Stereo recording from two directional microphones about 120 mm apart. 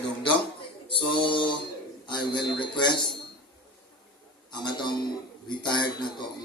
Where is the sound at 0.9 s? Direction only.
45° left (ahead or behind).